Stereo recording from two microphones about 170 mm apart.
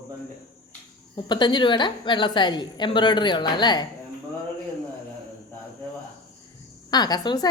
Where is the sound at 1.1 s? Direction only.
25° left (ahead or behind).